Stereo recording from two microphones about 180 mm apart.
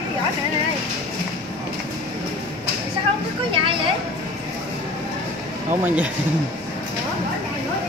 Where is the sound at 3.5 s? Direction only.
30° right (ahead or behind).